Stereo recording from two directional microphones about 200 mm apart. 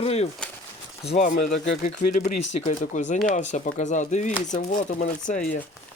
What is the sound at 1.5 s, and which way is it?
Speech, 60° left (ahead or behind).